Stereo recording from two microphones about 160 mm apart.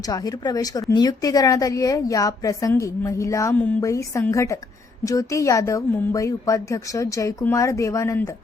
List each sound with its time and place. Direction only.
0.1 s speech: 25° left (ahead or behind)